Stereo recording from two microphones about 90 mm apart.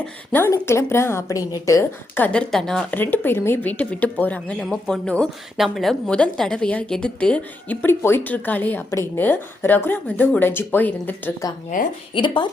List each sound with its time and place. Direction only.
0.0 s a woman's voice: 20° left (ahead or behind)
2.1 s a woman's voice: 15° left (ahead or behind)
2.9 s a woman's voice: 20° left (ahead or behind)
5.5 s a woman's voice: centre (ahead or behind); by 11.3 s 20° left (ahead or behind)
12.1 s a woman's voice: 65° left (ahead or behind)